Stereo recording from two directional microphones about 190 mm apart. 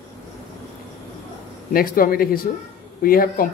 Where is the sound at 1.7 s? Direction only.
50° left (ahead or behind).